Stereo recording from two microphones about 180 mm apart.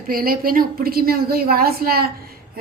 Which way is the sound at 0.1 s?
55° right (ahead or behind).